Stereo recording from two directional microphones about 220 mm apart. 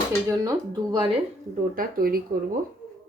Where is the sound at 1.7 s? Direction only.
40° right (ahead or behind).